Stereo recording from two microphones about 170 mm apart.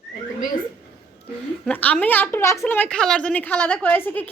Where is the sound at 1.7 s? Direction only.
10° left (ahead or behind).